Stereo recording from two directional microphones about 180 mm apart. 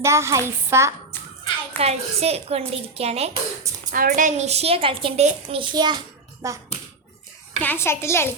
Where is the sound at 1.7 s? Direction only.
35° right (ahead or behind).